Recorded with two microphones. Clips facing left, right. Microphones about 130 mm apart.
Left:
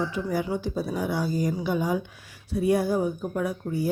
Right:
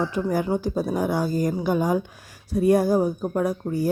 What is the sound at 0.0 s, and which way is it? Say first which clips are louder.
Speech: right 4 dB; 45° right (ahead or behind).